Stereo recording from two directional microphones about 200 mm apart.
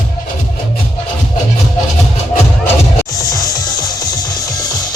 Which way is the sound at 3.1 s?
20° left (ahead or behind).